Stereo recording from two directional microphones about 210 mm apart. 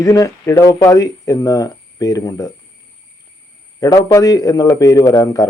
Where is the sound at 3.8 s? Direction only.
15° left (ahead or behind).